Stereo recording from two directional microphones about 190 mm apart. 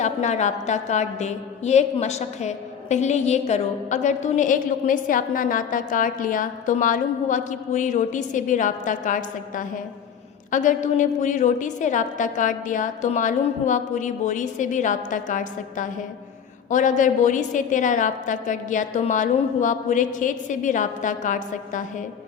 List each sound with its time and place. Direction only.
0.0 s a woman's voice: 40° left (ahead or behind)